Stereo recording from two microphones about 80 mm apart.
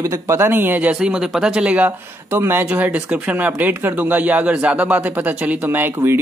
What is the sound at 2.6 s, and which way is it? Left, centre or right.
Speech, centre.